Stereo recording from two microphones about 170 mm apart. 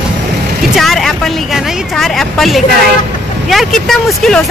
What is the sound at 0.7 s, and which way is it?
Speech, centre (ahead or behind).